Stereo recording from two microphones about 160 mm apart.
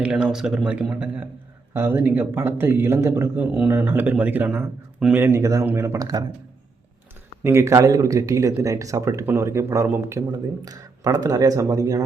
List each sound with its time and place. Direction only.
0.0 s speech: 5° right (ahead or behind); by 6.2 s 20° right (ahead or behind)
7.4 s speech: 15° right (ahead or behind)